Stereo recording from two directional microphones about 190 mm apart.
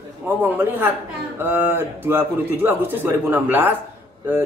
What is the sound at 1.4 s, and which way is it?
Speech, 10° right (ahead or behind).